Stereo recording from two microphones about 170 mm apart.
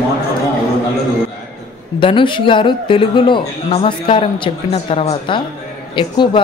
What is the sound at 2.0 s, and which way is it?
A man's voice, 30° left (ahead or behind).